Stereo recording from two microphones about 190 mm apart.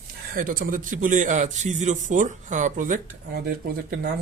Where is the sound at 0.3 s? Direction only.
45° right (ahead or behind).